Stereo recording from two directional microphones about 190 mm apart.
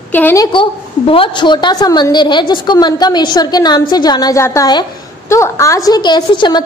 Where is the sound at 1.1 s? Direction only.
25° left (ahead or behind).